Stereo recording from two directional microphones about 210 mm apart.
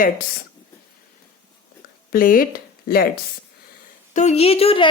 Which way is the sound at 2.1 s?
40° left (ahead or behind).